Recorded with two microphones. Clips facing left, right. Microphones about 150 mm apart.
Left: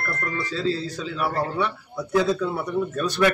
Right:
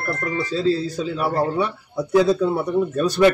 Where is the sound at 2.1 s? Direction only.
30° right (ahead or behind).